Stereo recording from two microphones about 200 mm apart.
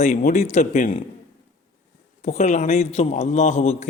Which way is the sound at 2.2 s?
40° left (ahead or behind).